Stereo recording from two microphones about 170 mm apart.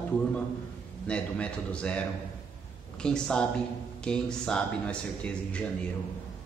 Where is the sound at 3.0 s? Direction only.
5° left (ahead or behind).